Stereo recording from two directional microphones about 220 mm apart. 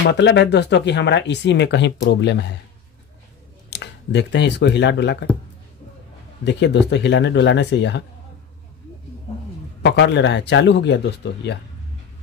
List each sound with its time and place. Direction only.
0.0 s speech: 50° left (ahead or behind)
3.7 s speech: 50° left (ahead or behind)
6.4 s speech: 50° left (ahead or behind)
9.8 s speech: 55° left (ahead or behind)